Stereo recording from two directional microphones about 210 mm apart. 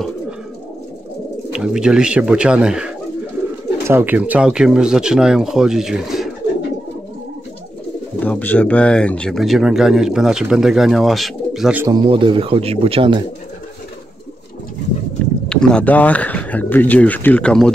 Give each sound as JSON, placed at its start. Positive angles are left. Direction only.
{"t": 1.5, "sound": "speech", "side_deg": -5}
{"t": 8.2, "sound": "speech", "side_deg": 10}
{"t": 11.9, "sound": "speech", "side_deg": -25}
{"t": 15.4, "sound": "speech", "side_deg": 5}